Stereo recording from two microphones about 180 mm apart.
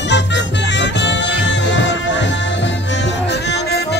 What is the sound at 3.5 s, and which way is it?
Music, 65° left (ahead or behind).